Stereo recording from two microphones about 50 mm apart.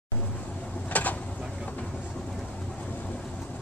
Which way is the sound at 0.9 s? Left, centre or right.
Left.